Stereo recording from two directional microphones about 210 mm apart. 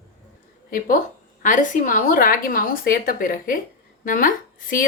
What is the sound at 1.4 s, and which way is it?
A woman's voice, 40° left (ahead or behind).